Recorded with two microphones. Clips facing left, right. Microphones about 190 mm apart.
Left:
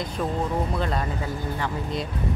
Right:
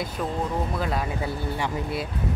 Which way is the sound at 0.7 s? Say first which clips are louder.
Even; 5° right (ahead or behind).